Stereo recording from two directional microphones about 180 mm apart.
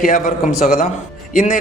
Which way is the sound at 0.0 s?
50° left (ahead or behind).